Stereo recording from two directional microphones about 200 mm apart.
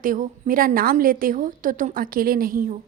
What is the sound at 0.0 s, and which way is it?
A woman's voice, 45° right (ahead or behind).